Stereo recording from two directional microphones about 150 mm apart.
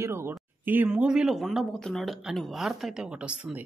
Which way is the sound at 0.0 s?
15° right (ahead or behind).